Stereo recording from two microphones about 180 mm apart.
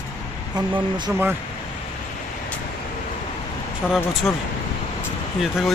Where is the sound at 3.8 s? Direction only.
5° left (ahead or behind).